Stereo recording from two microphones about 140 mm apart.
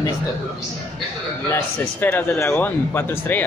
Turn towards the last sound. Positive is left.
turn(degrees=15)  # may be behind; listen again after turning